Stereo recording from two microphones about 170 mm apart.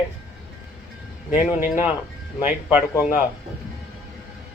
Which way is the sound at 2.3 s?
10° right (ahead or behind).